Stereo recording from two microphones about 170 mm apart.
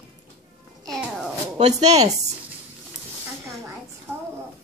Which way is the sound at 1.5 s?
40° right (ahead or behind).